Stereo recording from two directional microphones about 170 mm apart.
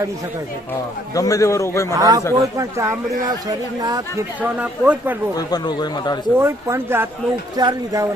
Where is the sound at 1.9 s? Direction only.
20° right (ahead or behind).